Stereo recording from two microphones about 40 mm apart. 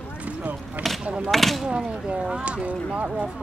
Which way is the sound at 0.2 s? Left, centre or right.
Right.